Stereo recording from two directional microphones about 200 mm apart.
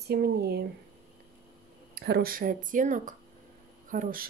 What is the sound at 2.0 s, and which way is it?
A woman's voice, 55° right (ahead or behind).